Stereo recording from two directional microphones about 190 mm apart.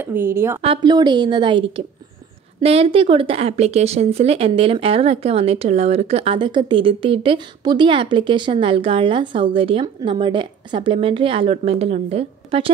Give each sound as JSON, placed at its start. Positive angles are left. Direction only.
{"t": 0.0, "sound": "speech", "side_deg": -10}
{"t": 0.6, "sound": "speech", "side_deg": -25}